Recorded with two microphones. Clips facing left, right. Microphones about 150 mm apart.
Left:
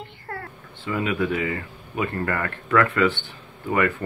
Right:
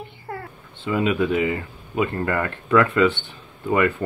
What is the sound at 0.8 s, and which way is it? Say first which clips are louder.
Speech: right 3 dB; 20° right (ahead or behind).